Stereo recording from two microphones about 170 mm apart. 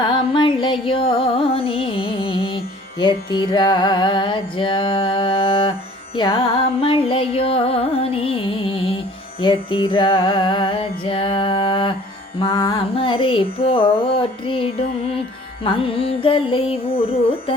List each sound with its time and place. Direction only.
0.0 s music: 30° left (ahead or behind)